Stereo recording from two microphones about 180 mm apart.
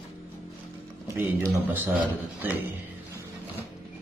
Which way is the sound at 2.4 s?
10° right (ahead or behind).